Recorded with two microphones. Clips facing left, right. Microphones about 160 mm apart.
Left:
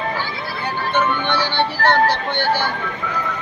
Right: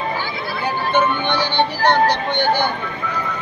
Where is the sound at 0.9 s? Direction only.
25° right (ahead or behind).